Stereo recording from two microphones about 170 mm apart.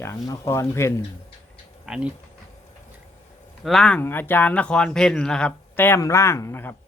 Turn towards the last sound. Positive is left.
turn(degrees=15)  # may be behind; listen again after turning